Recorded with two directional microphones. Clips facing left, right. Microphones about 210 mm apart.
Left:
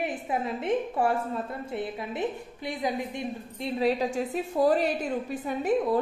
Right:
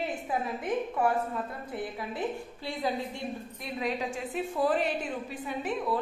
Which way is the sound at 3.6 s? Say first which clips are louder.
Left 7 dB; 35° left (ahead or behind).